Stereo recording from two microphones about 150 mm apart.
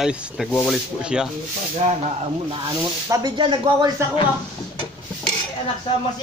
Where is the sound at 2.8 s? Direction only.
25° right (ahead or behind).